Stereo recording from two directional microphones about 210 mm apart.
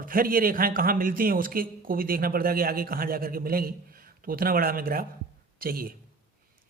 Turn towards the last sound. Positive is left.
turn(degrees=-45)  # may be behind; listen again after turning